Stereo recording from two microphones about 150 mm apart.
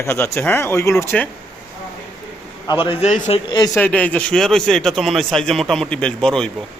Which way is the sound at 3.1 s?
45° left (ahead or behind).